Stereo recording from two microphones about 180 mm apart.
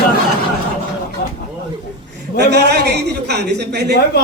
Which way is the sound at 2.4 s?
65° right (ahead or behind).